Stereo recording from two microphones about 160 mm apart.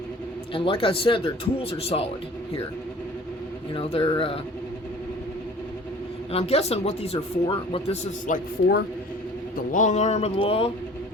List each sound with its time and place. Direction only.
0.5 s speech: 35° left (ahead or behind)
3.8 s speech: 35° left (ahead or behind)
6.3 s speech: 40° left (ahead or behind)
9.7 s speech: 50° left (ahead or behind)